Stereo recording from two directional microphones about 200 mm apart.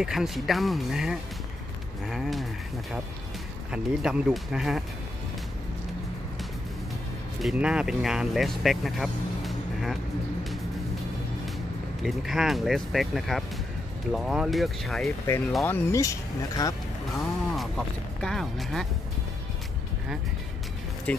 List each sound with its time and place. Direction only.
0.0 s speech: centre (ahead or behind)
3.7 s speech: 5° right (ahead or behind)
7.4 s speech: 5° right (ahead or behind)
12.0 s speech: centre (ahead or behind)
15.3 s speech: 10° left (ahead or behind)
17.6 s speech: centre (ahead or behind)
21.1 s speech: 10° left (ahead or behind)